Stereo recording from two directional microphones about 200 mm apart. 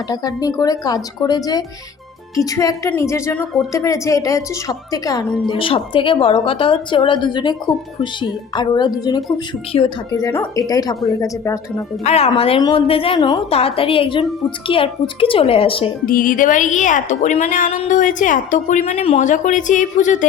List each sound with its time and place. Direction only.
0.1 s a woman's voice: 20° left (ahead or behind)
8.5 s a woman's voice: 20° left (ahead or behind)
12.0 s a woman's voice: 30° left (ahead or behind)
16.0 s a woman's voice: 45° left (ahead or behind)